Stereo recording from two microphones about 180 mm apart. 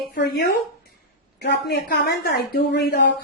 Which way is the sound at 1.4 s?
65° left (ahead or behind).